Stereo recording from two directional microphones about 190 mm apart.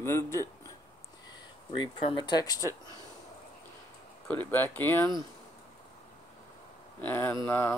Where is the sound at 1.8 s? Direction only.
25° left (ahead or behind).